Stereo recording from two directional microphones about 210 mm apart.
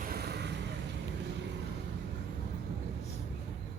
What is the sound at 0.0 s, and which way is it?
Vehicle, 45° right (ahead or behind).